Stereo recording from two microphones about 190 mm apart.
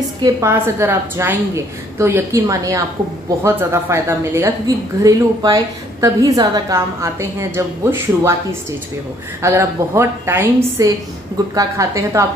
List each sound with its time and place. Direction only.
0.2 s a woman's voice: 15° right (ahead or behind)
9.4 s a woman's voice: 15° right (ahead or behind)